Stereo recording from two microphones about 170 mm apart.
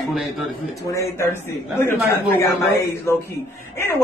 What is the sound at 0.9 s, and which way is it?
A man's voice, 15° left (ahead or behind).